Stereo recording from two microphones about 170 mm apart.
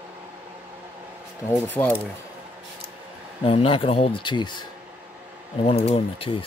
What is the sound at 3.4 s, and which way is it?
Speech, 30° left (ahead or behind).